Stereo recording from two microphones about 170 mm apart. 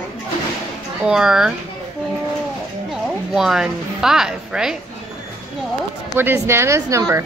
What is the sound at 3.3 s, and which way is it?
A woman's voice, centre (ahead or behind).